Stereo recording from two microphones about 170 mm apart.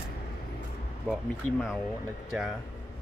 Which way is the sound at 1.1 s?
5° left (ahead or behind).